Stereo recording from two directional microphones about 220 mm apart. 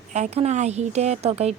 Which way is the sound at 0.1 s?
30° right (ahead or behind).